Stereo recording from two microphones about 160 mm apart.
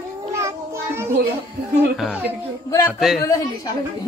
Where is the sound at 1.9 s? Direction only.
Centre (ahead or behind).